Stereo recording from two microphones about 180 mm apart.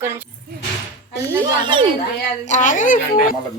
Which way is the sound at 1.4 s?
25° right (ahead or behind).